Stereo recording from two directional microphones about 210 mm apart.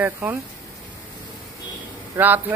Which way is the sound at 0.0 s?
10° right (ahead or behind).